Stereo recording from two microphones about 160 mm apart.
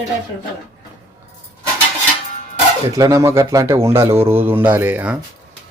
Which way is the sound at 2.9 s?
20° right (ahead or behind).